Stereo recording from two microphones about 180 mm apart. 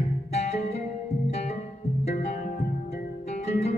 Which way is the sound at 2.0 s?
40° left (ahead or behind).